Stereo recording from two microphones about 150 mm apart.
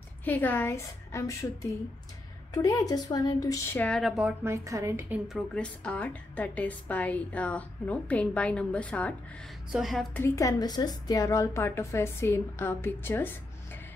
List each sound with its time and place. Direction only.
0.2 s a woman's voice: 10° left (ahead or behind); by 4.4 s 5° right (ahead or behind)
4.5 s a woman's voice: 20° right (ahead or behind)
5.3 s a woman's voice: 5° left (ahead or behind)
10.1 s a woman's voice: 20° left (ahead or behind)